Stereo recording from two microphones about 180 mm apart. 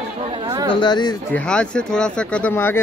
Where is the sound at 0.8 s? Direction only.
25° left (ahead or behind).